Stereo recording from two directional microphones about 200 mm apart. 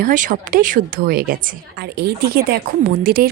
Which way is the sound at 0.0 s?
40° right (ahead or behind).